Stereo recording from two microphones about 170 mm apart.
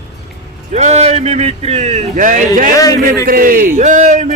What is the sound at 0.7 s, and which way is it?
Speech, 40° right (ahead or behind).